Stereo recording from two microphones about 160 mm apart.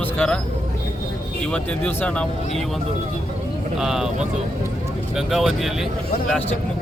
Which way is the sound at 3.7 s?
5° right (ahead or behind).